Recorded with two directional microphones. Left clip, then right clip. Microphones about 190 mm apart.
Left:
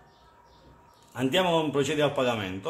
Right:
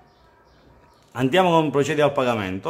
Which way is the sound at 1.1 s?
35° right (ahead or behind).